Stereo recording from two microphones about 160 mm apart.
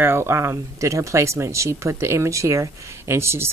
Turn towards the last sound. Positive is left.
turn(degrees=-15)  # may be behind; listen again after turning